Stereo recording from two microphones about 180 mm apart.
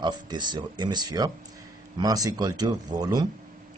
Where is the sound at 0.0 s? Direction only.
25° right (ahead or behind).